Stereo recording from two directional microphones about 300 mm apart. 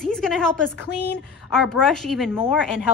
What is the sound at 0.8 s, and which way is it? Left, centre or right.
Speech, left.